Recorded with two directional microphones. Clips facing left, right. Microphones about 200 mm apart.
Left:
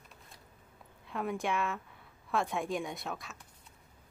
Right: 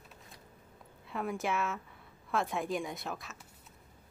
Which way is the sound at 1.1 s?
Centre (ahead or behind).